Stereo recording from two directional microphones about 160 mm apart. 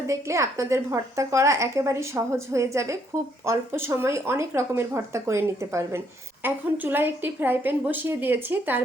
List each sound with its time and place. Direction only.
0.1 s a woman's voice: 20° right (ahead or behind)